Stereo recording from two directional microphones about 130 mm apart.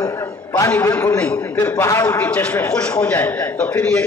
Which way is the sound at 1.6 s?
25° left (ahead or behind).